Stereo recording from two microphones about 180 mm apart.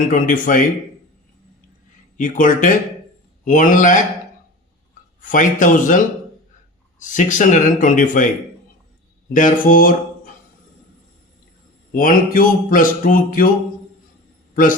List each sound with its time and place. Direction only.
0.0 s speech: 45° left (ahead or behind)
2.1 s speech: 45° left (ahead or behind)
5.2 s speech: 45° left (ahead or behind)
9.3 s speech: 50° left (ahead or behind)
11.9 s speech: 50° left (ahead or behind)
14.5 s a man's voice: 50° left (ahead or behind)